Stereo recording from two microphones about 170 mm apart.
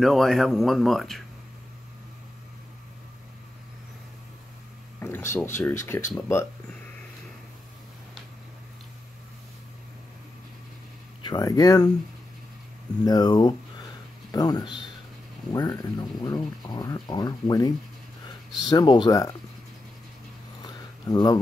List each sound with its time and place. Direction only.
0.0 s speech: centre (ahead or behind)
5.0 s speech: 15° left (ahead or behind)
11.2 s speech: 25° left (ahead or behind)
13.0 s speech: 25° left (ahead or behind)
20.6 s a sound: 25° left (ahead or behind)